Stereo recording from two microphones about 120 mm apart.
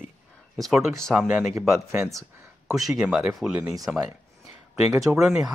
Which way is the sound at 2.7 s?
5° right (ahead or behind).